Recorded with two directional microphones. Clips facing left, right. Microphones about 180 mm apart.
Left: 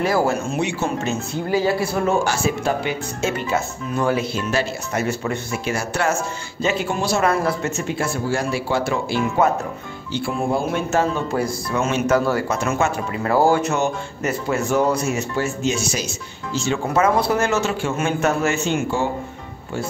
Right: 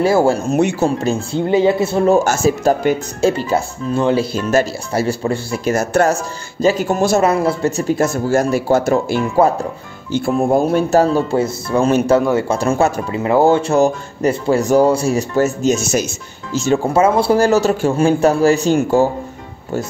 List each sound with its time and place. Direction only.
0.0 s speech: 30° right (ahead or behind)
2.2 s speech: 45° right (ahead or behind)
4.9 s speech: 30° right (ahead or behind)
7.2 s speech: 20° right (ahead or behind)
7.6 s speech: 35° right (ahead or behind)
13.2 s speech: 20° right (ahead or behind); by 16.8 s 40° right (ahead or behind)
16.9 s speech: 30° right (ahead or behind)